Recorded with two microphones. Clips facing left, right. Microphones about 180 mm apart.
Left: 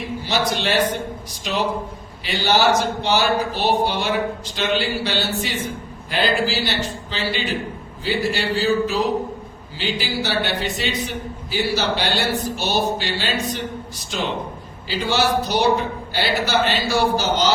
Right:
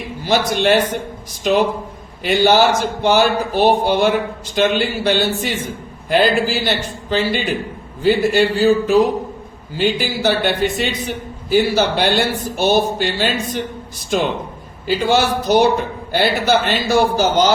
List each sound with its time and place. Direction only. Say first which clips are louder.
0.3 s speech: right 7 dB; 50° right (ahead or behind)
2.2 s speech: right 5 dB; 50° right (ahead or behind)